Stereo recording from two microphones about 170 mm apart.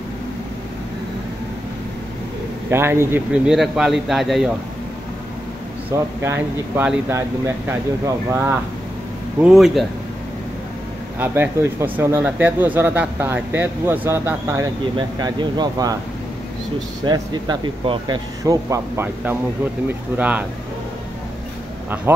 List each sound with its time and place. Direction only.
2.7 s speech: 15° right (ahead or behind)
3.5 s speech: 5° right (ahead or behind)
5.9 s speech: 10° right (ahead or behind)
9.4 s speech: centre (ahead or behind)
11.1 s speech: 10° right (ahead or behind)
17.0 s speech: 25° right (ahead or behind); by 20.4 s 10° right (ahead or behind)